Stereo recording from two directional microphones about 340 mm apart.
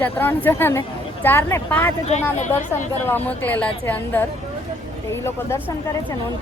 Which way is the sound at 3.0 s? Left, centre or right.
Centre.